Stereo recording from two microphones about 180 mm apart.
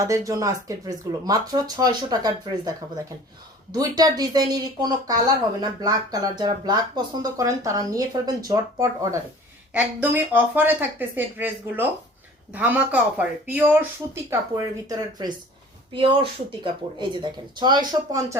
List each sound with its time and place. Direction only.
0.0 s speech: 20° right (ahead or behind)